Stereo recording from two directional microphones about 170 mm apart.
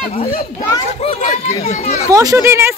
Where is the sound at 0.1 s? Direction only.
55° left (ahead or behind).